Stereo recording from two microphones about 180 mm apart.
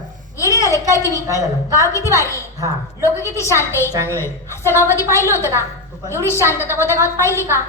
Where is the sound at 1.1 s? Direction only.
15° left (ahead or behind).